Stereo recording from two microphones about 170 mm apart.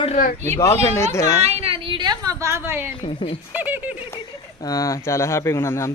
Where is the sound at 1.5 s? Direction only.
35° right (ahead or behind); by 2.9 s 15° right (ahead or behind).